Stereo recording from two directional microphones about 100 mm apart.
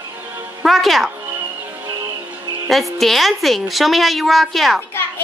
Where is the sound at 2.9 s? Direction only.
Centre (ahead or behind).